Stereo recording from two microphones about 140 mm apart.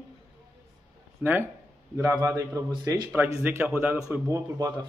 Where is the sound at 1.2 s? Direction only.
15° right (ahead or behind); by 3.1 s 30° right (ahead or behind).